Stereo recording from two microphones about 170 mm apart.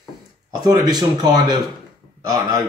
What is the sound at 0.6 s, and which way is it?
Speech, 25° right (ahead or behind).